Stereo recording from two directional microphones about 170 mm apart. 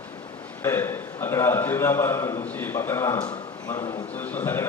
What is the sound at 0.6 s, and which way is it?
A man's voice, 15° left (ahead or behind).